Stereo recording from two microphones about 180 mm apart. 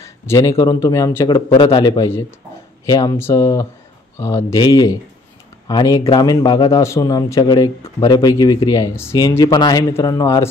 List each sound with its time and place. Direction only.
0.0 s a man's voice: 15° left (ahead or behind)